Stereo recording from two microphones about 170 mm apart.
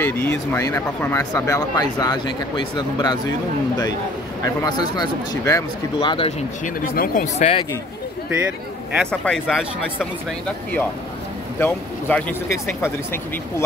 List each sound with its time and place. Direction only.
0.0 s speech: 15° left (ahead or behind)
4.6 s speech: 25° left (ahead or behind)
5.9 s speech: 30° left (ahead or behind)
6.6 s speech: 50° left (ahead or behind)
8.9 s speech: 5° left (ahead or behind)
11.6 s speech: 10° left (ahead or behind)